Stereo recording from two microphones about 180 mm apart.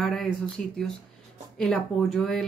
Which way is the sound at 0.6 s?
50° left (ahead or behind).